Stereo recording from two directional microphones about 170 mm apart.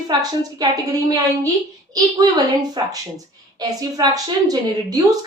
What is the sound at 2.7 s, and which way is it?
A woman's voice, 20° right (ahead or behind).